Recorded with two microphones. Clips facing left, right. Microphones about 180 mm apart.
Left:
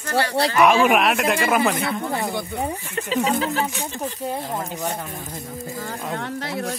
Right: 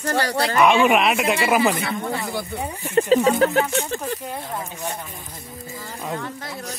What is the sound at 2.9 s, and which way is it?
Speech, 40° right (ahead or behind).